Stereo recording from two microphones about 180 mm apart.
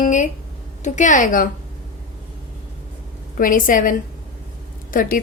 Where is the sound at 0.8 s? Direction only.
45° left (ahead or behind).